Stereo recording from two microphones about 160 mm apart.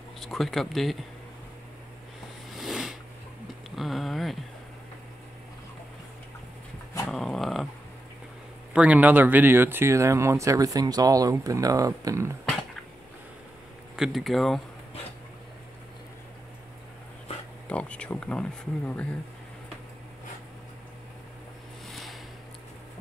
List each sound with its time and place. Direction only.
0.2 s speech: centre (ahead or behind)
2.5 s a sound: centre (ahead or behind)
7.1 s dog: centre (ahead or behind)
8.7 s speech: 10° right (ahead or behind)
13.9 s speech: centre (ahead or behind)
17.6 s speech: 5° left (ahead or behind)
21.8 s a sound: centre (ahead or behind)